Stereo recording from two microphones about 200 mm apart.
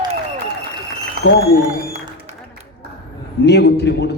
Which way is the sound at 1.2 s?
90° left.